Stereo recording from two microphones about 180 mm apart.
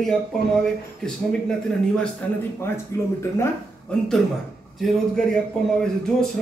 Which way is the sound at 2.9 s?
15° left (ahead or behind).